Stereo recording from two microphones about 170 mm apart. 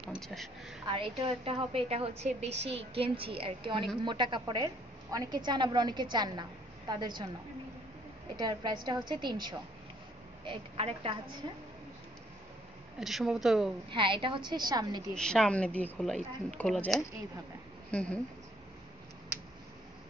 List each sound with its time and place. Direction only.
0.1 s a sound: centre (ahead or behind)
0.8 s a woman's voice: 30° right (ahead or behind)
8.4 s a woman's voice: 25° right (ahead or behind)
13.0 s a woman's voice: centre (ahead or behind)
13.8 s a woman's voice: 30° right (ahead or behind)
15.1 s a woman's voice: 5° left (ahead or behind)